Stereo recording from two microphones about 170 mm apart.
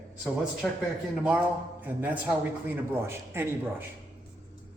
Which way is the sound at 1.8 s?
10° right (ahead or behind).